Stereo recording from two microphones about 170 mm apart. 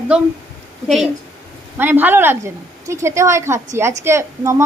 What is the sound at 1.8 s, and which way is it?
A woman's voice, 10° right (ahead or behind).